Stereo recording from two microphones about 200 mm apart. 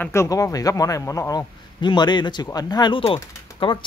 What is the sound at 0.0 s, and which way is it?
A man's voice, 15° left (ahead or behind).